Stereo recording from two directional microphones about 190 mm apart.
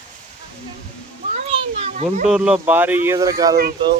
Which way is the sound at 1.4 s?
30° right (ahead or behind).